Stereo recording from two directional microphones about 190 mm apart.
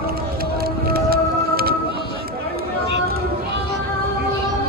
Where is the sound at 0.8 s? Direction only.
55° right (ahead or behind).